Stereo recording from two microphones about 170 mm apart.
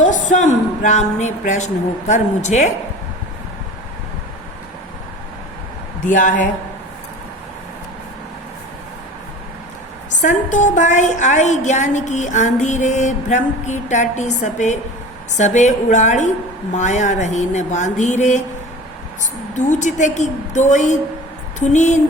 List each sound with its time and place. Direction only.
0.0 s a woman's voice: 50° left (ahead or behind)
6.0 s a woman's voice: 50° left (ahead or behind)
10.2 s a woman's voice: 45° left (ahead or behind)
19.5 s a woman's voice: 45° left (ahead or behind)